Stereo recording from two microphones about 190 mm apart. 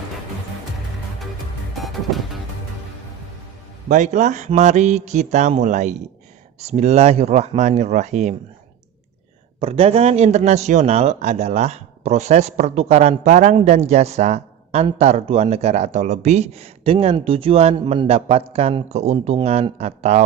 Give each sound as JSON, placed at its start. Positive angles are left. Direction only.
{"t": 1.7, "sound": "music", "side_deg": 0}
{"t": 3.8, "sound": "a man's voice", "side_deg": -40}
{"t": 9.6, "sound": "a man's voice", "side_deg": -30}